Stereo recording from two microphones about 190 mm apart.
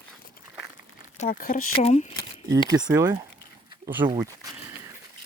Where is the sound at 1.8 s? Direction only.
35° left (ahead or behind).